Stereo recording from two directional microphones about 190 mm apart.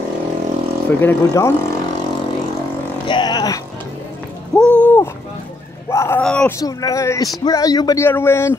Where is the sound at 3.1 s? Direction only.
25° left (ahead or behind).